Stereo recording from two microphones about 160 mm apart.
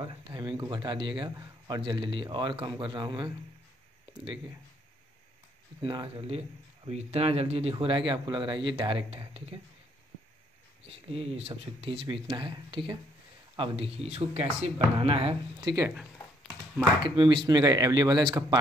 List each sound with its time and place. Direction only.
0.6 s a man's voice: 30° right (ahead or behind)
5.8 s speech: 30° right (ahead or behind)
10.9 s speech: 35° right (ahead or behind)
17.0 s a man's voice: 30° right (ahead or behind)